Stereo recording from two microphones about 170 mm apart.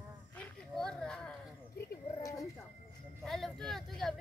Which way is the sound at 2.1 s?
20° left (ahead or behind).